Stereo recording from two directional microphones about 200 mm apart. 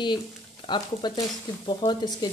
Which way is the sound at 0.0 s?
20° left (ahead or behind).